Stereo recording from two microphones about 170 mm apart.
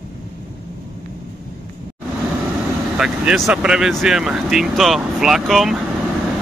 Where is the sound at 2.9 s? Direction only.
5° right (ahead or behind).